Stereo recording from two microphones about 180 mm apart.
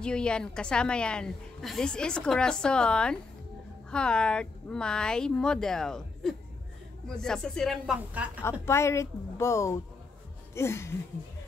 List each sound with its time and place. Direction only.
0.0 s a woman's voice: 5° left (ahead or behind)
8.4 s speech: 15° left (ahead or behind)
10.5 s a sound: 15° left (ahead or behind)